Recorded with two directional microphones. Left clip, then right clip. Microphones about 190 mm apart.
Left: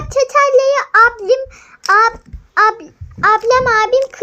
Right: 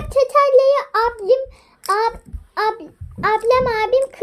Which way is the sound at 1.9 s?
5° right (ahead or behind).